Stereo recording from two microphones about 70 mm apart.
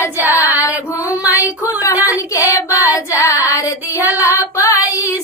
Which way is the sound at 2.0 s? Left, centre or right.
Left.